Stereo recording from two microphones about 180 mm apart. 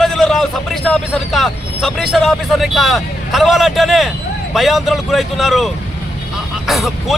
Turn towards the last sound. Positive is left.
turn(degrees=0)  # may be behind; listen again after turning